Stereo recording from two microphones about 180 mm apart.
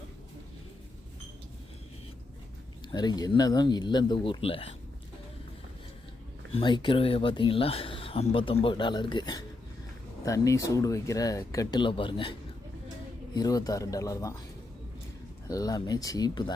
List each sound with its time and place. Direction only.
2.9 s speech: 25° left (ahead or behind)
6.5 s speech: 25° left (ahead or behind)
15.4 s speech: 20° left (ahead or behind)